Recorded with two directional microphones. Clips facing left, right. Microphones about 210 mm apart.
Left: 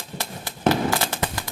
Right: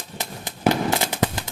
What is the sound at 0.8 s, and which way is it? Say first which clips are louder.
Firecracker: right 2 dB; 20° right (ahead or behind).